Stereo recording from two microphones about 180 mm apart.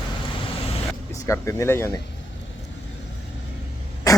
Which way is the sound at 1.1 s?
15° left (ahead or behind).